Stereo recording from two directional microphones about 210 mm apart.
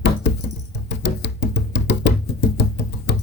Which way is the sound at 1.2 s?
55° left (ahead or behind).